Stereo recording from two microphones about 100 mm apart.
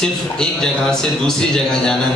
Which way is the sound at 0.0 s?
5° left (ahead or behind).